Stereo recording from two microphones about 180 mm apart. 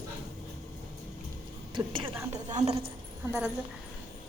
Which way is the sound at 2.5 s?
35° right (ahead or behind).